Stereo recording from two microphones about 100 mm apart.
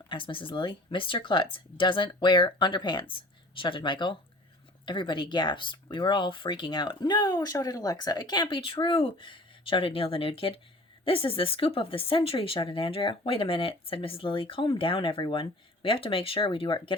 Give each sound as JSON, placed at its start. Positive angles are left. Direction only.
{"t": 0.1, "sound": "speech", "side_deg": 60}